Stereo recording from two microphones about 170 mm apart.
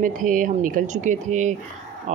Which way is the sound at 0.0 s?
50° right (ahead or behind).